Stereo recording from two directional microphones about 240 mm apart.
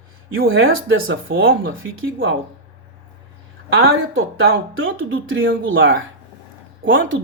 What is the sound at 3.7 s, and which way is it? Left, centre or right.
Speech, right.